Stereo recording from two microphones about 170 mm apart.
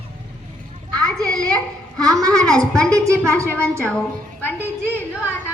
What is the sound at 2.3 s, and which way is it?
Speech, 5° left (ahead or behind).